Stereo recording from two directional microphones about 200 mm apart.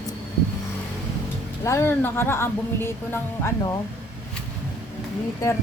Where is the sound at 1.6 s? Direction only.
15° left (ahead or behind).